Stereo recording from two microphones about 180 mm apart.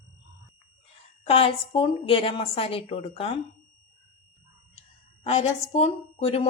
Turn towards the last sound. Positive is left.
turn(degrees=30)  # may be behind; listen again after turning